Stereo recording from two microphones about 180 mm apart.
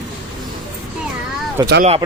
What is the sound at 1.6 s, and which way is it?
Speech, 20° right (ahead or behind).